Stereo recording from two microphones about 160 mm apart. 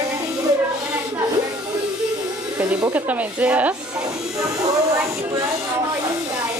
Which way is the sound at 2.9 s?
10° right (ahead or behind).